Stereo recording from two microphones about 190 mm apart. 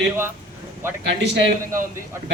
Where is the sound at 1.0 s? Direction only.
65° right (ahead or behind).